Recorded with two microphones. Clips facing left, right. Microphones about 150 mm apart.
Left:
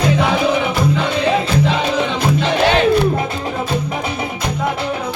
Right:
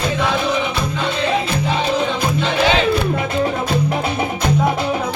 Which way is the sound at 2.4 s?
60° left (ahead or behind).